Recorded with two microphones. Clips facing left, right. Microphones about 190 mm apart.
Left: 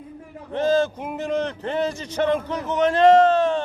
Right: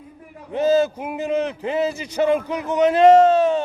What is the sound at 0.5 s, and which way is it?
A man's voice, 10° right (ahead or behind).